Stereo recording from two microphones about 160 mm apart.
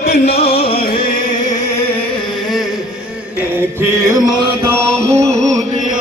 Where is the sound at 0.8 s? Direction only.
65° left (ahead or behind).